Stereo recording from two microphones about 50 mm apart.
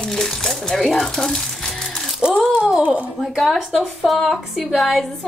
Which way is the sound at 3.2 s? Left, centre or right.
Centre.